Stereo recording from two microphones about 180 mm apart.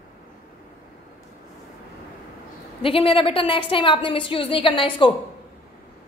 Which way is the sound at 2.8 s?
30° left (ahead or behind).